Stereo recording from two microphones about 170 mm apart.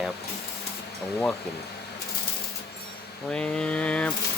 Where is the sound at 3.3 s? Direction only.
5° left (ahead or behind).